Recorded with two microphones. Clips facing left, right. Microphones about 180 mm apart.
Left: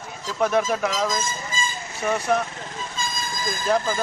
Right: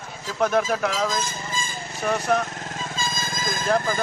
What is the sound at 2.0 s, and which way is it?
Speech, 5° left (ahead or behind).